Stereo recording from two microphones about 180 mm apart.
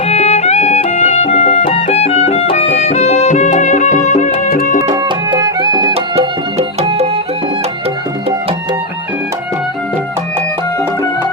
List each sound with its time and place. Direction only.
0.1 s music: 35° left (ahead or behind); by 4.8 s 55° left (ahead or behind)
4.8 s music: 25° right (ahead or behind)
5.9 s music: 35° right (ahead or behind)